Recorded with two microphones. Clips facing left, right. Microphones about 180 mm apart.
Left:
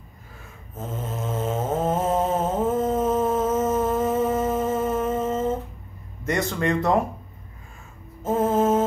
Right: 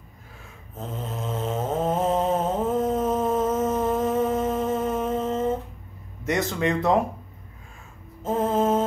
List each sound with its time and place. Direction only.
0.7 s snoring: 5° left (ahead or behind)
6.2 s a man's voice: centre (ahead or behind)
8.2 s music: 5° left (ahead or behind)